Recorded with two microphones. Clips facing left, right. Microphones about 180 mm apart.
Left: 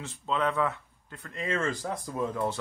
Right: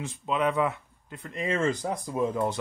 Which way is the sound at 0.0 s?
15° right (ahead or behind).